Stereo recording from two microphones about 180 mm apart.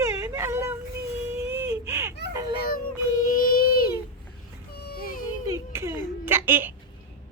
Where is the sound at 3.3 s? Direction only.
55° left (ahead or behind).